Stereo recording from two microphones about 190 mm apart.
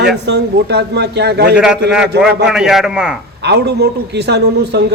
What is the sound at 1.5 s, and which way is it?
A man's voice, 5° right (ahead or behind).